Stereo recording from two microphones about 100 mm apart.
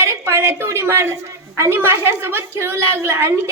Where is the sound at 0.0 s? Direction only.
30° right (ahead or behind).